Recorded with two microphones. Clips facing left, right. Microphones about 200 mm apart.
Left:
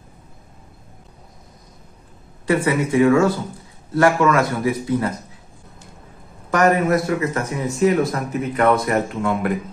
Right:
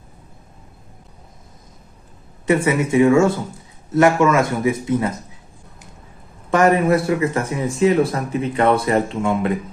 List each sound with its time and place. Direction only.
2.4 s speech: 25° right (ahead or behind)
6.5 s speech: 30° right (ahead or behind)